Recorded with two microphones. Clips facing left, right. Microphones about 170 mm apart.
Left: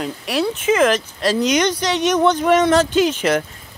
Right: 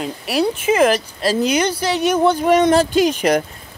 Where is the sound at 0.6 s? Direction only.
10° right (ahead or behind).